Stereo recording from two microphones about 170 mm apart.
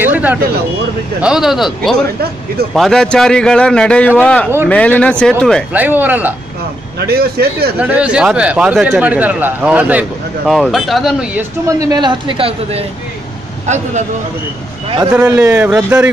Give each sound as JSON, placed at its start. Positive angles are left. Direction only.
{"t": 0.0, "sound": "vehicle", "side_deg": -10}
{"t": 1.2, "sound": "a man's voice", "side_deg": -5}
{"t": 5.7, "sound": "speech", "side_deg": -10}
{"t": 7.0, "sound": "a man's voice", "side_deg": -70}
{"t": 7.8, "sound": "speech", "side_deg": -10}
{"t": 11.6, "sound": "speech", "side_deg": -25}
{"t": 15.4, "sound": "speech", "side_deg": -10}